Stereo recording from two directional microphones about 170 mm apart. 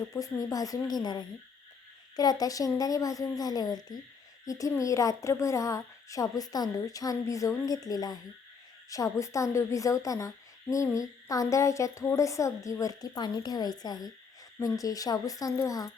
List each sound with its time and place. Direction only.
0.1 s a woman's voice: 20° left (ahead or behind)